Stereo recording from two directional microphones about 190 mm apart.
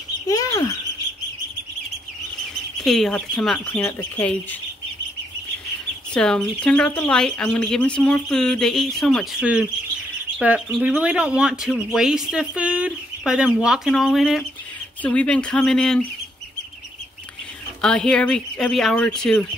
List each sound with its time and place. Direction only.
0.3 s bird: 20° left (ahead or behind)
2.8 s speech: centre (ahead or behind)
6.1 s speech: 5° left (ahead or behind)
17.8 s speech: 5° left (ahead or behind)